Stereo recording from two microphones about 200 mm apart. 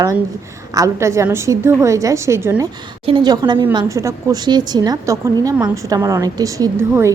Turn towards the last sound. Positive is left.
turn(degrees=-15)  # may be behind; listen again after turning